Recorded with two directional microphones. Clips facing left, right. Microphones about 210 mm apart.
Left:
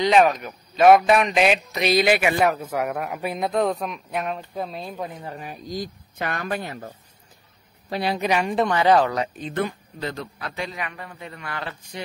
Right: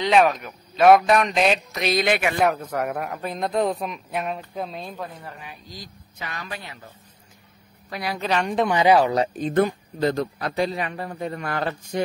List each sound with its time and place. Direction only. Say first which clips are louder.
0.0 s a man's voice: left 1 dB; centre (ahead or behind)
4.9 s a woman's voice: left 3 dB; 15° left (ahead or behind)
5.4 s speech: left 9 dB; 45° left (ahead or behind)
7.9 s a woman's voice: left 4 dB; 30° left (ahead or behind)
8.2 s a woman's voice: even; 10° left (ahead or behind)
8.6 s speech: right 2 dB; 10° right (ahead or behind)
9.1 s speech: right 6 dB; 35° right (ahead or behind)